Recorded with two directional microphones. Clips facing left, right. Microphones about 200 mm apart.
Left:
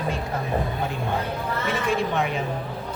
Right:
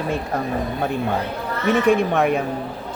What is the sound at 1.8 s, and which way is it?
Speech, 55° right (ahead or behind).